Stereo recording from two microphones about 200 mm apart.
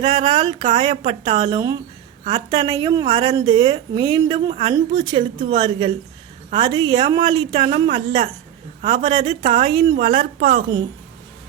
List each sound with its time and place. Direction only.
0.0 s a woman's voice: 25° right (ahead or behind)